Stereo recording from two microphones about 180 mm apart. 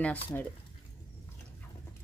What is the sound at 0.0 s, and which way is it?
Speech, 10° left (ahead or behind).